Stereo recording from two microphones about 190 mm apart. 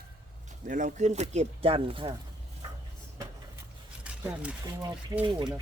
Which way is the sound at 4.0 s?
5° right (ahead or behind).